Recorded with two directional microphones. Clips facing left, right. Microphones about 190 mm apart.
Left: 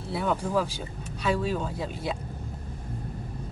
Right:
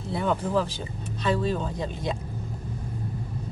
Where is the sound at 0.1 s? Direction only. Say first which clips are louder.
Right 1 dB; 5° left (ahead or behind).